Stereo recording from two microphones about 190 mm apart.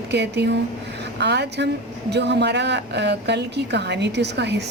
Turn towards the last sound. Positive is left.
turn(degrees=-65)  # may be behind; listen again after turning